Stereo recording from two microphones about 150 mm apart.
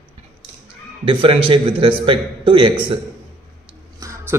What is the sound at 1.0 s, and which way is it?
A man's voice, 40° right (ahead or behind).